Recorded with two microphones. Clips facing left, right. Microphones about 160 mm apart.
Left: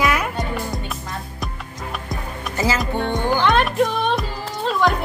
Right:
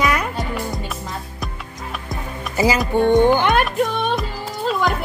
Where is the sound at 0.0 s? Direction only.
Centre (ahead or behind).